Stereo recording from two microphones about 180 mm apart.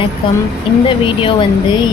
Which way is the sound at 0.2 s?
25° left (ahead or behind).